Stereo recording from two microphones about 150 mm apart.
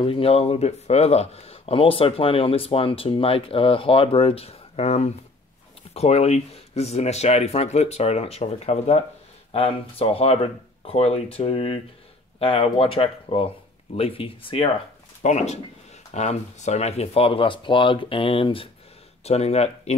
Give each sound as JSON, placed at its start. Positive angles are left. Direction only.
{"t": 0.0, "sound": "speech", "side_deg": 40}
{"t": 15.2, "sound": "speech", "side_deg": 50}